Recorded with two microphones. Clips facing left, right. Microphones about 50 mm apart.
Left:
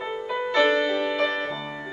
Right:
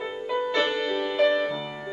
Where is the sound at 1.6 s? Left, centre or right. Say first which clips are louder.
Left 1 dB; centre.